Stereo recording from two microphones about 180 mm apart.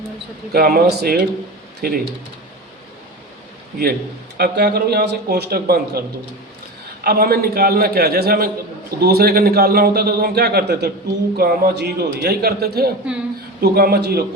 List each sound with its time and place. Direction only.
0.5 s a man's voice: 60° right (ahead or behind)
4.4 s a man's voice: 60° right (ahead or behind)
7.0 s a man's voice: 55° right (ahead or behind)